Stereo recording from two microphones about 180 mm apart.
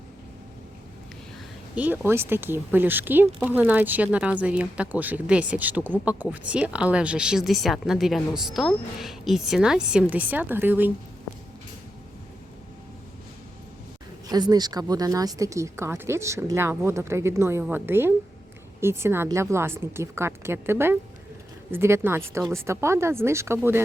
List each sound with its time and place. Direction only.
1.7 s speech: 10° right (ahead or behind)
14.3 s speech: 20° right (ahead or behind)